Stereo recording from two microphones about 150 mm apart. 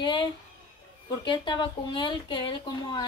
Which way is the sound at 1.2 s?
30° left (ahead or behind).